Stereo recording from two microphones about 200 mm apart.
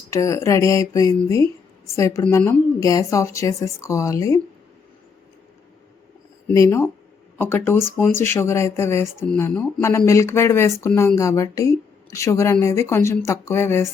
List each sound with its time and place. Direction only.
0.1 s speech: 15° left (ahead or behind)
6.5 s speech: 15° left (ahead or behind)